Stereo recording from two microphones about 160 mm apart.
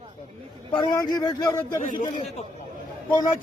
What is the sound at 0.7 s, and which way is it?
Speech, 25° left (ahead or behind).